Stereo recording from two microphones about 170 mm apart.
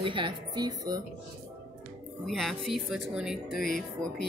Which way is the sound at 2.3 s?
Centre (ahead or behind).